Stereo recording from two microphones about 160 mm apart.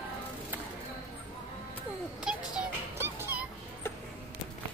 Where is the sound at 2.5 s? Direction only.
10° right (ahead or behind).